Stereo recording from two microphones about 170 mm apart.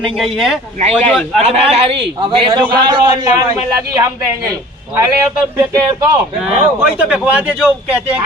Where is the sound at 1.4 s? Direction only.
40° right (ahead or behind); by 4.5 s 20° right (ahead or behind).